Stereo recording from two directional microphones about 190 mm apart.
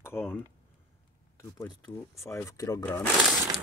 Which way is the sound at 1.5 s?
20° left (ahead or behind).